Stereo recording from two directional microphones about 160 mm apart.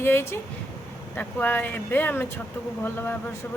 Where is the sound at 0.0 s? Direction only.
15° left (ahead or behind).